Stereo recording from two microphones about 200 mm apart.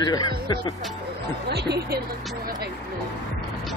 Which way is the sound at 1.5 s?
55° right (ahead or behind).